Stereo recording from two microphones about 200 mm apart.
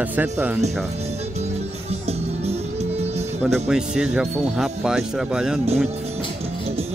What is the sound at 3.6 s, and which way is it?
Speech, 5° right (ahead or behind).